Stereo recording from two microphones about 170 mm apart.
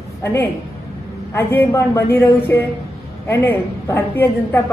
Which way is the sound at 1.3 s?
15° left (ahead or behind).